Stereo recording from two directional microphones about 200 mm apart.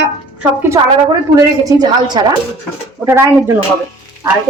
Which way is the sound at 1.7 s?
20° right (ahead or behind).